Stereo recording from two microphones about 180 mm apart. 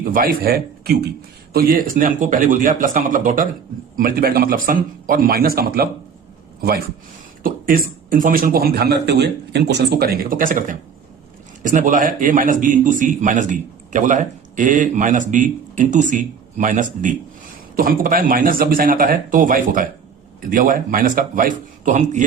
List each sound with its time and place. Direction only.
0.0 s a man's voice: 50° right (ahead or behind)